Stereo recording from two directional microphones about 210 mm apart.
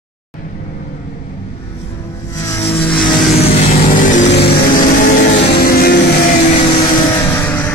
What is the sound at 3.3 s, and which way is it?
Vehicle, 30° left (ahead or behind).